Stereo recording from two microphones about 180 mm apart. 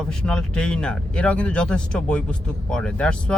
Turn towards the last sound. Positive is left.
turn(degrees=5)  # may be behind; listen again after turning